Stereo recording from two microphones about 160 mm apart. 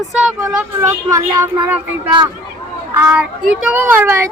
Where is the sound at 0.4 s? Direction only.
20° right (ahead or behind).